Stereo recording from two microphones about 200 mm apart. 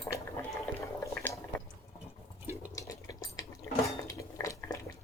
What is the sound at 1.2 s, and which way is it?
Drip, 10° left (ahead or behind).